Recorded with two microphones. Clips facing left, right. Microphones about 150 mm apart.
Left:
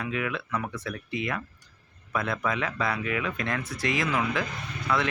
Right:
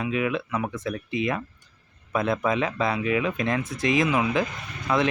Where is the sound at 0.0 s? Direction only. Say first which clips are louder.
Right 5 dB; 20° right (ahead or behind).